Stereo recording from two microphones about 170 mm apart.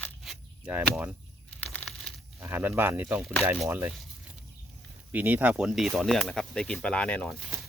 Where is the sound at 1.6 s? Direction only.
10° left (ahead or behind).